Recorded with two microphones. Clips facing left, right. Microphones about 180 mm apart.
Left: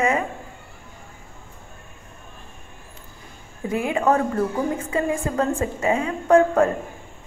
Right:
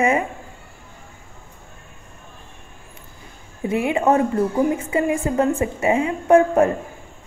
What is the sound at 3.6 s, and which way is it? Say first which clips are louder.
A woman's voice: right 2 dB; 25° right (ahead or behind).